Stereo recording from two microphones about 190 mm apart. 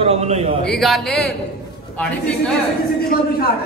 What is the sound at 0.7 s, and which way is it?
Speech, centre (ahead or behind).